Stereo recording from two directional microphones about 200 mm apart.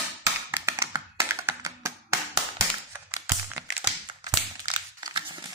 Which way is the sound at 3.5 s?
20° right (ahead or behind).